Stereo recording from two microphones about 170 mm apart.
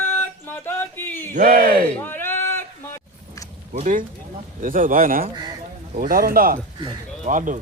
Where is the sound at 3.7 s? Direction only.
50° right (ahead or behind).